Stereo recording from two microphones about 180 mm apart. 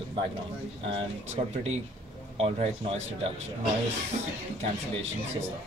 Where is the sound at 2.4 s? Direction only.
35° right (ahead or behind).